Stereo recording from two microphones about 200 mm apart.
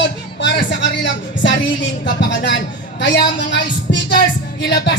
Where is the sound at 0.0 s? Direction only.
60° left (ahead or behind).